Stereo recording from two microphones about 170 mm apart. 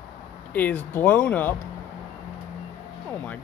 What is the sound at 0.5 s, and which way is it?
Speech, 10° left (ahead or behind).